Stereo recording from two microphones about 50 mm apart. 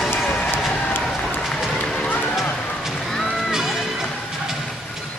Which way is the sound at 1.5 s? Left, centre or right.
Centre.